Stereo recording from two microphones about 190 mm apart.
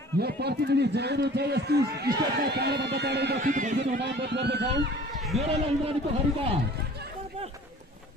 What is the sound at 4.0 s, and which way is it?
Speech, 60° right (ahead or behind).